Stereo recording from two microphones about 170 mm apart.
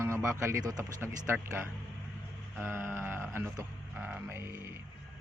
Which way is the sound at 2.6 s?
15° right (ahead or behind).